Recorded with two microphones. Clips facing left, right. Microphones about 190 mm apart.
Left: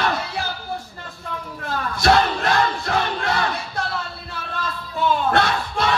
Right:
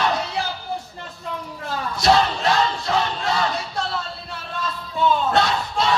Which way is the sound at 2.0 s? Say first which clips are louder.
Even; 55° left (ahead or behind).